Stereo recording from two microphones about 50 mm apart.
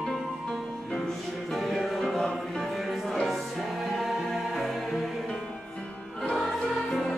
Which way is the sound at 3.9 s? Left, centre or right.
Centre.